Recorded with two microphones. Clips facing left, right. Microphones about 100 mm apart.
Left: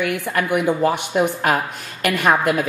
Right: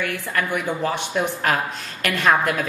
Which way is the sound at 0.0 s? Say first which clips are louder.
Left 4 dB; 15° left (ahead or behind).